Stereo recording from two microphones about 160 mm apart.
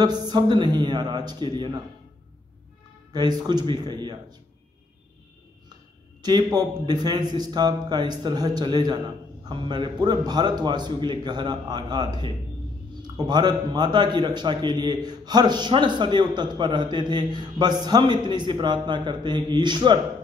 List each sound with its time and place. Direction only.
0.0 s a man's voice: 25° right (ahead or behind)
3.1 s a man's voice: 25° right (ahead or behind)
6.2 s a man's voice: 25° right (ahead or behind)